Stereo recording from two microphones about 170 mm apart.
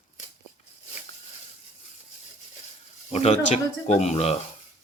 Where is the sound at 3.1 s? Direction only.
40° left (ahead or behind).